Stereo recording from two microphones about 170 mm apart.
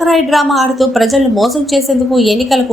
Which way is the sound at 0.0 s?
Centre (ahead or behind).